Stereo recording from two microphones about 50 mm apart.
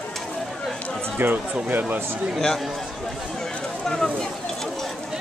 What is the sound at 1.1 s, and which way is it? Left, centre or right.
Speech, right.